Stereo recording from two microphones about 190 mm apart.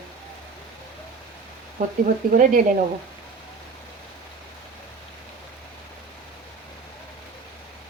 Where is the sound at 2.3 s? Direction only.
45° right (ahead or behind).